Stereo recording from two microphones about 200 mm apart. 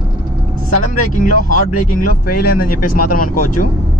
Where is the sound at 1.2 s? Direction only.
40° left (ahead or behind).